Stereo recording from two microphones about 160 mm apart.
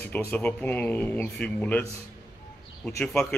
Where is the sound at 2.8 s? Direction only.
5° left (ahead or behind).